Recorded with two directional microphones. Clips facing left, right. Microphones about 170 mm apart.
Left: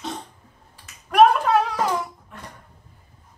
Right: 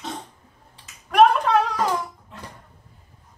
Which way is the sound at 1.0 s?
Centre (ahead or behind).